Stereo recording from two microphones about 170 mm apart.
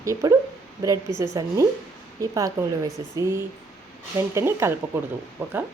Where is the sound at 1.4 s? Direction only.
20° right (ahead or behind).